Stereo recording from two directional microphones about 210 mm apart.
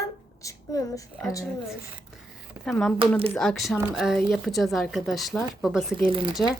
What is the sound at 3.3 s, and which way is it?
Speech, centre (ahead or behind).